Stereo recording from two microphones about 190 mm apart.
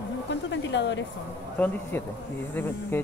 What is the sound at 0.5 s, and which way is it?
Speech, 70° left (ahead or behind).